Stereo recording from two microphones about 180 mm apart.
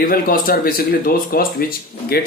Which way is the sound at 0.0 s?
55° left (ahead or behind).